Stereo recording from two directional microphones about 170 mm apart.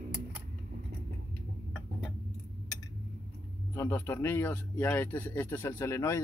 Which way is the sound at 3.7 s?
15° left (ahead or behind).